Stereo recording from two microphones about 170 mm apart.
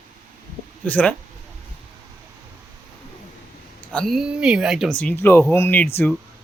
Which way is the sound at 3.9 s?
Centre (ahead or behind).